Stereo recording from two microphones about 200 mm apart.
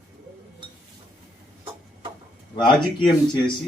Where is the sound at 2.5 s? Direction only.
20° left (ahead or behind).